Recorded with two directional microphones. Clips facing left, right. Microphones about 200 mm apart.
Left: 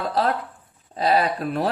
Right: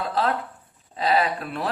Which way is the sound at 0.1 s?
35° left (ahead or behind).